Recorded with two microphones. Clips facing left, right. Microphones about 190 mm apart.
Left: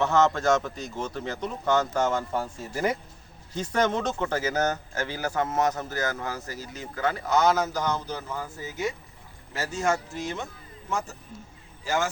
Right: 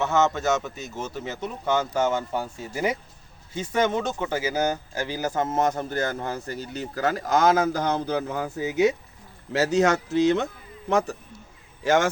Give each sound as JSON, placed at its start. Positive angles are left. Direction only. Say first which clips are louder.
{"t": 0.0, "sound": "a man's voice", "louder": "even", "side_deg": -5}
{"t": 6.5, "sound": "speech", "louder": "right 6 dB", "side_deg": -60}
{"t": 6.9, "sound": "speech", "louder": "right 2 dB", "side_deg": -40}
{"t": 7.7, "sound": "a man's voice", "louder": "right 4 dB", "side_deg": -60}
{"t": 11.8, "sound": "speech", "louder": "right 7 dB", "side_deg": -90}